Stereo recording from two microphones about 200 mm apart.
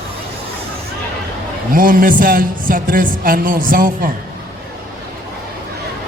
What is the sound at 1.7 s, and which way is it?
A man's voice, 45° right (ahead or behind).